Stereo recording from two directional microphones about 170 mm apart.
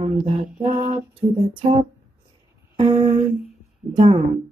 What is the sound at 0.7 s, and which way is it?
Speech, 30° right (ahead or behind).